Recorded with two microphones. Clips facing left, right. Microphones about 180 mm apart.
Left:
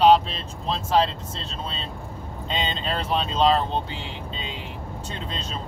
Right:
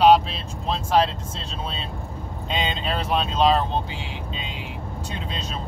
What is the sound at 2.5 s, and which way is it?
Speech, 10° right (ahead or behind).